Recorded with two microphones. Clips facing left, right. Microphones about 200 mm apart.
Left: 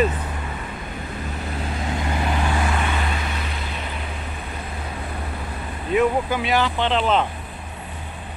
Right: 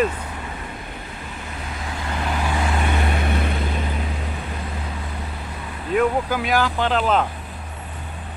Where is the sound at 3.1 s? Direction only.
55° right (ahead or behind).